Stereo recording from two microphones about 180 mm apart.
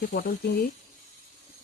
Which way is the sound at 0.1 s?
55° left (ahead or behind).